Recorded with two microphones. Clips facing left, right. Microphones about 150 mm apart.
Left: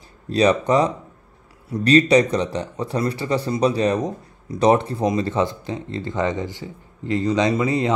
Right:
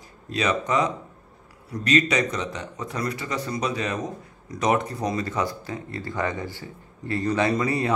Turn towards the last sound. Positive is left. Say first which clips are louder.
# left 4 dB
turn(degrees=20)  # may be behind; listen again after turning